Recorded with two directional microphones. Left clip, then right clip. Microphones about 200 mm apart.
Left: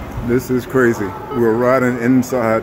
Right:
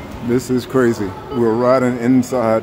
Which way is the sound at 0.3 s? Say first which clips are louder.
Even; 10° right (ahead or behind).